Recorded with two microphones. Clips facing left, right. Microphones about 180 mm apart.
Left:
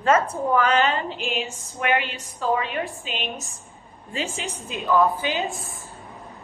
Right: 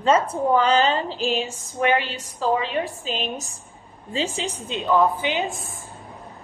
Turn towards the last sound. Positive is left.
turn(degrees=-20)  # may be behind; listen again after turning